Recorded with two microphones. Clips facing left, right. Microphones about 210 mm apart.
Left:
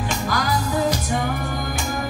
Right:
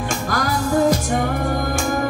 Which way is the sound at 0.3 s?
45° right (ahead or behind).